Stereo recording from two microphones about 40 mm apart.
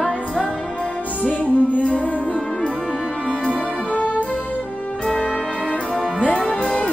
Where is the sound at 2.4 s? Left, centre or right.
Left.